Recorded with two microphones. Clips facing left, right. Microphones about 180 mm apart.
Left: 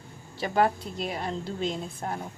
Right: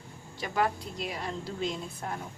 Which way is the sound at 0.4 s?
35° left (ahead or behind).